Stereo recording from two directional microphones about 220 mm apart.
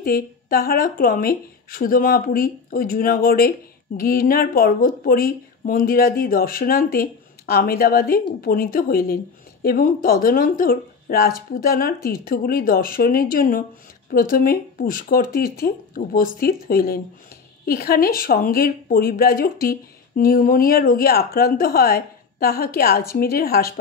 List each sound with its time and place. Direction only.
0.0 s speech: 40° left (ahead or behind)